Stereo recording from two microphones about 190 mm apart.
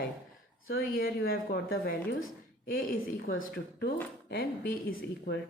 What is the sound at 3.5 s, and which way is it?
Speech, 60° left (ahead or behind).